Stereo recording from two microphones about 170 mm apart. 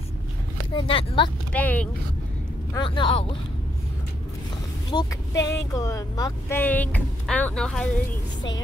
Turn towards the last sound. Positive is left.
turn(degrees=5)  # may be behind; listen again after turning